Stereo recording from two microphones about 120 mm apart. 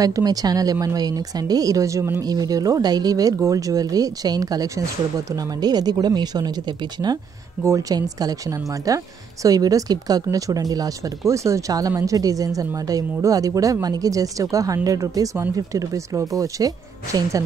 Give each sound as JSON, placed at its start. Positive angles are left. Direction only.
{"t": 0.0, "sound": "a woman's voice", "side_deg": -30}